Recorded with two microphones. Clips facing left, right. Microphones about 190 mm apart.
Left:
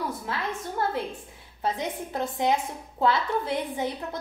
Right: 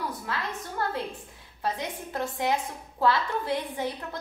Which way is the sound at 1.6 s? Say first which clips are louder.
Left 2 dB; 20° left (ahead or behind).